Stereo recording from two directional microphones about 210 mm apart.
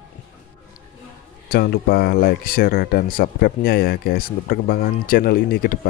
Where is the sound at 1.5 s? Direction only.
45° left (ahead or behind).